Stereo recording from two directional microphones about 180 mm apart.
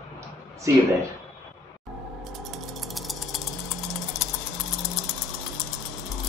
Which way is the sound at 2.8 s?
Centre (ahead or behind).